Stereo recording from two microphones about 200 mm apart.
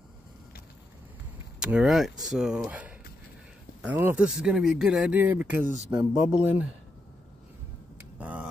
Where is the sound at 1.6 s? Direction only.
5° right (ahead or behind).